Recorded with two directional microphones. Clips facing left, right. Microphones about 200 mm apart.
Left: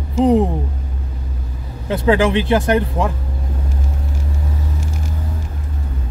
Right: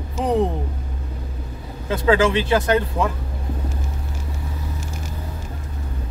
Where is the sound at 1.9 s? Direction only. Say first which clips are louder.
Left 2 dB; 15° left (ahead or behind).